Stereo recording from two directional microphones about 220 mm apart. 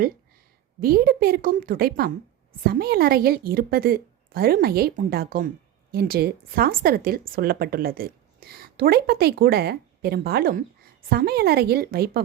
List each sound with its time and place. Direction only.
0.8 s a woman's voice: 40° right (ahead or behind)